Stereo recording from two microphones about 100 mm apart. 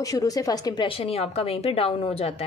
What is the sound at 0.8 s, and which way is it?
A woman's voice, 70° left (ahead or behind).